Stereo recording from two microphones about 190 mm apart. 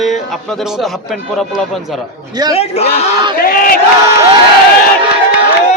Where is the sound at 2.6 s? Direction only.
35° left (ahead or behind).